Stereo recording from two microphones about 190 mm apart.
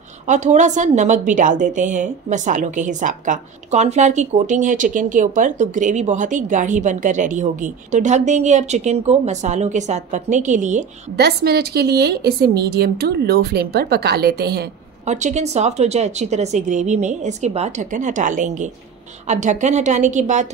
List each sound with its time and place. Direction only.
0.3 s a woman's voice: 40° right (ahead or behind)
11.1 s speech: 55° right (ahead or behind)
15.0 s a woman's voice: 40° right (ahead or behind)